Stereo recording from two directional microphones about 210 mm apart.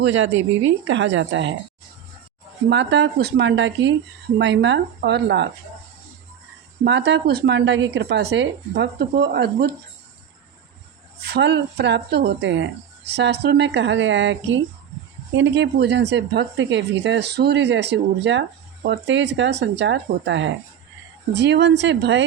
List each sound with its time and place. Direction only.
0.0 s speech: 65° right (ahead or behind)
2.6 s speech: 55° right (ahead or behind)
6.8 s speech: 55° right (ahead or behind)
11.2 s speech: 55° right (ahead or behind)